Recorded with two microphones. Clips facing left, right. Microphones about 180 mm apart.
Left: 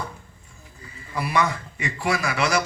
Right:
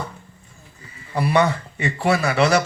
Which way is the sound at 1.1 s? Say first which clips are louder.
Right 5 dB; 30° right (ahead or behind).